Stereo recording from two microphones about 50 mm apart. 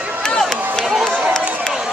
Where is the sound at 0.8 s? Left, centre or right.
Centre.